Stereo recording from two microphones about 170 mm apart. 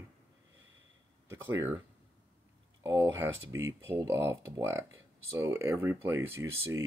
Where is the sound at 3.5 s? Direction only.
15° right (ahead or behind).